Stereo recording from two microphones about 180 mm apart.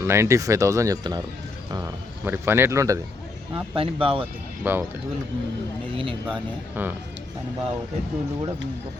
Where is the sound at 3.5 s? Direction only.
30° right (ahead or behind).